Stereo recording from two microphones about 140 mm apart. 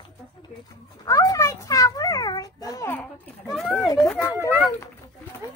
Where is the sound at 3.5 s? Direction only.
Centre (ahead or behind).